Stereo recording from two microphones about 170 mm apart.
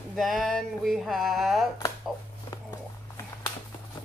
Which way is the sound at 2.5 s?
25° left (ahead or behind).